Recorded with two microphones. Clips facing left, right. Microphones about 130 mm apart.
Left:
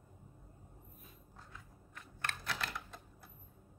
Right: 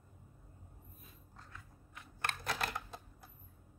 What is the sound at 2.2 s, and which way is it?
Typewriter, 50° right (ahead or behind).